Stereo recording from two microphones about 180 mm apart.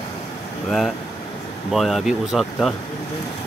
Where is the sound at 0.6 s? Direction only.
Centre (ahead or behind).